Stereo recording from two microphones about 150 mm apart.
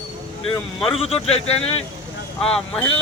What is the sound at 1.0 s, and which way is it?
Speech, 40° left (ahead or behind).